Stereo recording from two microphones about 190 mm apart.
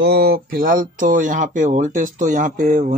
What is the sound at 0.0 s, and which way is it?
Speech, 55° right (ahead or behind).